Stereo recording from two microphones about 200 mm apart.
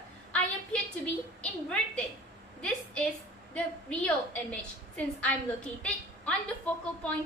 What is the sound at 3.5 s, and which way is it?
A woman's voice, 5° left (ahead or behind).